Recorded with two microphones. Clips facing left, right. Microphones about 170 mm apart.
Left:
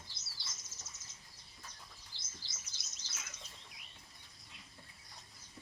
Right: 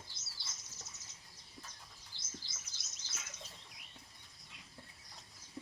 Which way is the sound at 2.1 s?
55° right (ahead or behind).